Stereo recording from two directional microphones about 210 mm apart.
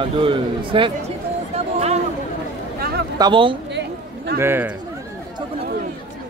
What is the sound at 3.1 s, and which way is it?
Speech, 20° right (ahead or behind).